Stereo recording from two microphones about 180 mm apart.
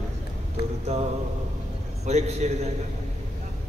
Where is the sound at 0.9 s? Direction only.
40° right (ahead or behind).